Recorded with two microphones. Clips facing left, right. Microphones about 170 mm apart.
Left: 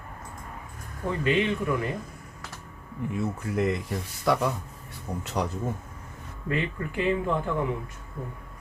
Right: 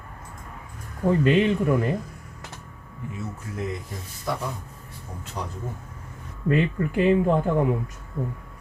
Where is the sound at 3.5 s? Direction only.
60° left (ahead or behind).